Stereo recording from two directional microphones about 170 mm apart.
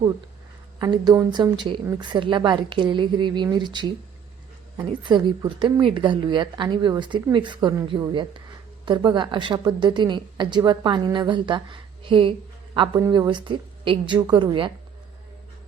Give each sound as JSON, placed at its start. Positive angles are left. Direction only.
{"t": 0.8, "sound": "a woman's voice", "side_deg": -20}